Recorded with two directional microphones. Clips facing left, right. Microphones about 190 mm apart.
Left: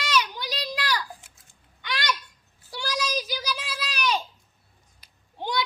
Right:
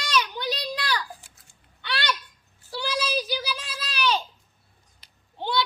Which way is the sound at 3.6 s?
10° left (ahead or behind).